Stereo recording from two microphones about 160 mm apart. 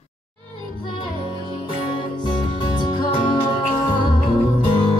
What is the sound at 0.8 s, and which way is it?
Music, 30° left (ahead or behind).